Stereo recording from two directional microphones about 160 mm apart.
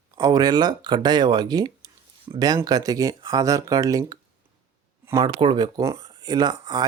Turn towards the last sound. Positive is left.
turn(degrees=-25)  # may be behind; listen again after turning